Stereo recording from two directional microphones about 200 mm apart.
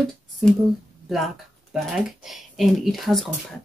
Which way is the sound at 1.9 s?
Centre (ahead or behind).